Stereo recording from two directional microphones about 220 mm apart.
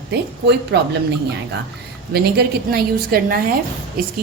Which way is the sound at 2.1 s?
45° right (ahead or behind).